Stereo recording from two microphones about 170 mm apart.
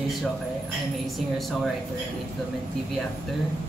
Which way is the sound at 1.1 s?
Centre (ahead or behind).